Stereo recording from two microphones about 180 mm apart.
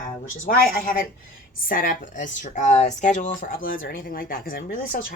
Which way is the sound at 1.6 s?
50° left (ahead or behind).